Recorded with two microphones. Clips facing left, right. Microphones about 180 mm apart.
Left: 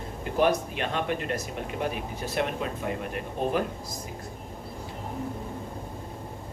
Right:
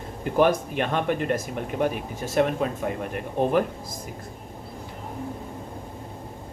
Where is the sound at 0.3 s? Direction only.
50° right (ahead or behind).